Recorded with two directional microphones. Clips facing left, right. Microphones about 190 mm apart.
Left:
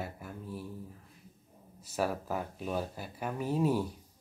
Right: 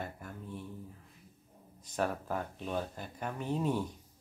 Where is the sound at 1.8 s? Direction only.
5° left (ahead or behind).